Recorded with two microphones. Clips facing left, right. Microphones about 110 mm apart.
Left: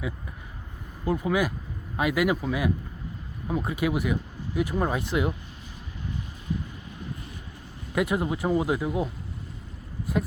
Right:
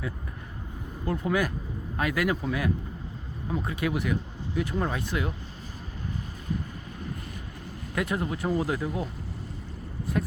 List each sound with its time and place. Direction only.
1.0 s speech: 10° left (ahead or behind)
7.9 s speech: 15° left (ahead or behind)
10.1 s speech: 15° left (ahead or behind)